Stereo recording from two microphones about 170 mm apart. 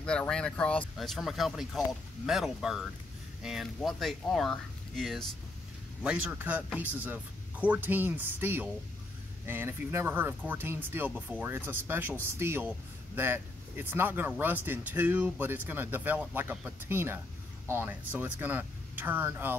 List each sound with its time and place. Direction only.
0.0 s speech: 5° left (ahead or behind); by 19.5 s 15° right (ahead or behind)